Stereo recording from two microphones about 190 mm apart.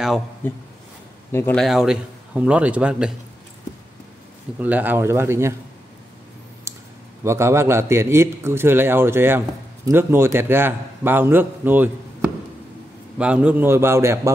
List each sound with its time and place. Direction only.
0.4 s a man's voice: 10° left (ahead or behind)
4.6 s a man's voice: 10° right (ahead or behind)
6.7 s clicking: 15° right (ahead or behind)
7.2 s a man's voice: 15° right (ahead or behind)
13.2 s a man's voice: 5° right (ahead or behind)